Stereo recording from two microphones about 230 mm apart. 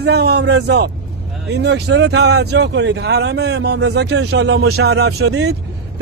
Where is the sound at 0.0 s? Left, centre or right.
Right.